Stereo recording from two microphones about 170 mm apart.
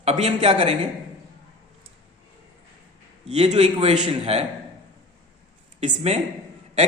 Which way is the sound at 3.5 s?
40° right (ahead or behind).